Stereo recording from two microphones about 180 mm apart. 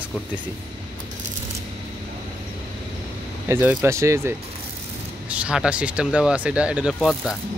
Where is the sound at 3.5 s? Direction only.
10° right (ahead or behind).